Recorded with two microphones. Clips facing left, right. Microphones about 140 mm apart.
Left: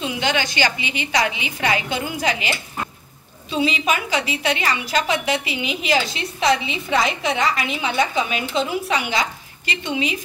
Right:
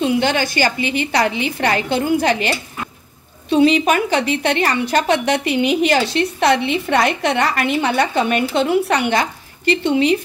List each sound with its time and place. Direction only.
0.0 s a woman's voice: 50° right (ahead or behind)
3.4 s a woman's voice: 55° right (ahead or behind)
6.1 s a woman's voice: 60° right (ahead or behind)